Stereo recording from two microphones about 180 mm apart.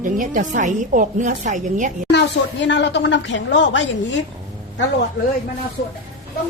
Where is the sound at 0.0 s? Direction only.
45° right (ahead or behind).